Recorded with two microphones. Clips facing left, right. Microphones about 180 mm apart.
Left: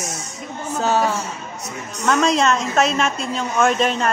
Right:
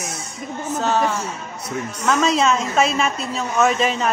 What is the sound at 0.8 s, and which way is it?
A woman's voice, centre (ahead or behind).